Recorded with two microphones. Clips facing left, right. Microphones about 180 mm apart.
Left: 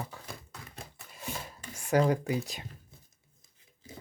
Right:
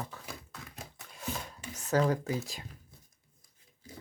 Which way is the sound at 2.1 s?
15° left (ahead or behind).